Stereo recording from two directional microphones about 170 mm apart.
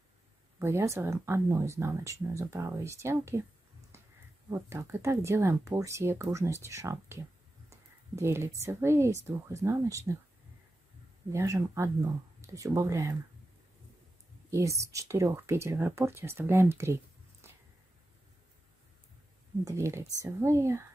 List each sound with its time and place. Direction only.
0.6 s speech: 15° right (ahead or behind)
3.9 s a sound: 15° right (ahead or behind)
4.5 s speech: 15° right (ahead or behind)
7.7 s a sound: 15° right (ahead or behind)
8.6 s speech: 15° right (ahead or behind)
11.2 s speech: 20° right (ahead or behind)
14.5 s speech: 20° right (ahead or behind)
19.6 s speech: 15° right (ahead or behind)